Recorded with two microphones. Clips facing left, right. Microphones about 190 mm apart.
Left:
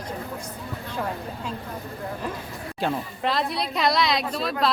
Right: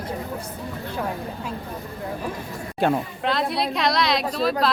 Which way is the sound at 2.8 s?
55° right (ahead or behind).